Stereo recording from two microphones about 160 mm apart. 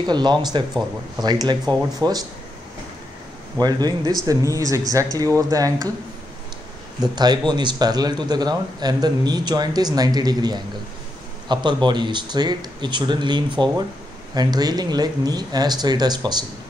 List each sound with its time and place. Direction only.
0.0 s a man's voice: 25° right (ahead or behind)
3.5 s a man's voice: 25° right (ahead or behind)
7.2 s a man's voice: 25° right (ahead or behind)